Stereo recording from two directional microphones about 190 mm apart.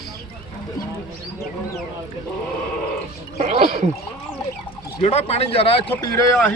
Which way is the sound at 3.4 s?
45° right (ahead or behind).